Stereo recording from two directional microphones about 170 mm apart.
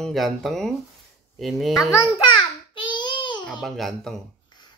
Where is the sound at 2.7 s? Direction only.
30° left (ahead or behind).